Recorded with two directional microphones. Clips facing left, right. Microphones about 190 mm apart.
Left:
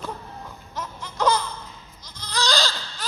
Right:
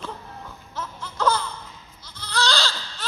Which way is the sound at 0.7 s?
15° left (ahead or behind).